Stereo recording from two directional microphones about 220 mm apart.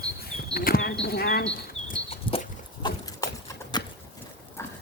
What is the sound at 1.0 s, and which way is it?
Speech, 45° left (ahead or behind).